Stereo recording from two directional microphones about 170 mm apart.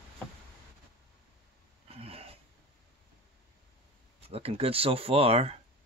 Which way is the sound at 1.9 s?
35° right (ahead or behind).